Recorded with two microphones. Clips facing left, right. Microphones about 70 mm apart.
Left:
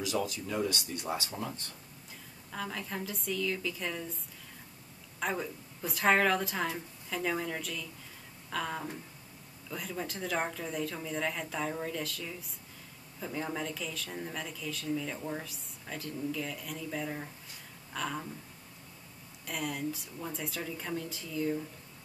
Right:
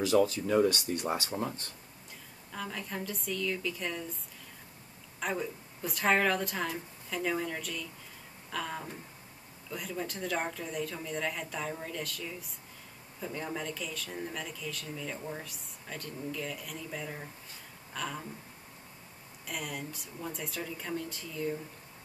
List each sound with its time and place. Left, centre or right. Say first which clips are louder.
0.0 s speech: right 7 dB; right
2.5 s speech: left 1 dB; centre
5.2 s speech: even; centre
8.5 s a sound: left 2 dB; centre
9.7 s speech: right 1 dB; centre
19.4 s speech: left 4 dB; centre